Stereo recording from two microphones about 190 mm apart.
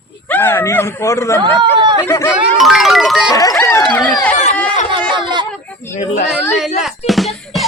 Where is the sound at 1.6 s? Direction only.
25° right (ahead or behind).